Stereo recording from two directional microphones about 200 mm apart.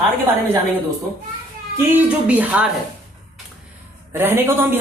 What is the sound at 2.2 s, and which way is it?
Speech, 5° right (ahead or behind).